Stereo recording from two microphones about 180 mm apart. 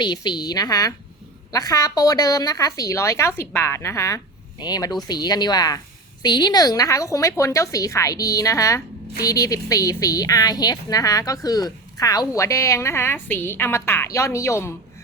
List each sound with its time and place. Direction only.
0.0 s a woman's voice: 25° left (ahead or behind)